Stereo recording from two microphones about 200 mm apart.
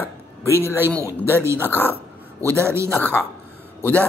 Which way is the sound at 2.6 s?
15° right (ahead or behind).